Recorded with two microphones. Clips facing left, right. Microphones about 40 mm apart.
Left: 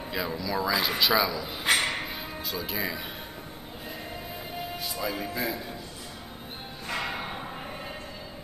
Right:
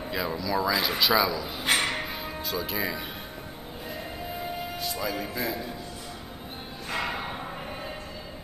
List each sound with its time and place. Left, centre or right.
0.1 s speech: centre
5.0 s speech: centre
7.0 s a sound: centre